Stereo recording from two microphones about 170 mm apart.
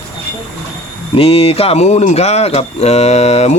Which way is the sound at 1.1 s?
35° left (ahead or behind).